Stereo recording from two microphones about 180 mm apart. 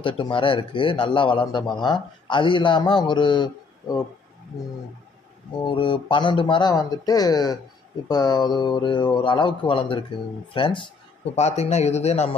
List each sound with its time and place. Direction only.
0.0 s a man's voice: 30° left (ahead or behind)
5.6 s a man's voice: 25° left (ahead or behind)